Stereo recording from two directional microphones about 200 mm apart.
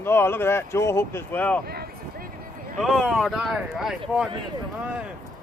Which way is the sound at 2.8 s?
Centre (ahead or behind).